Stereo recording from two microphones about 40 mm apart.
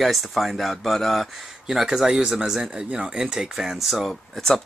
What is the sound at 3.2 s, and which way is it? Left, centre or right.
Speech, centre.